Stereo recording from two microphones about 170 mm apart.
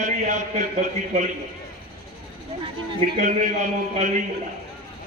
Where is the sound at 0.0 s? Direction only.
45° right (ahead or behind).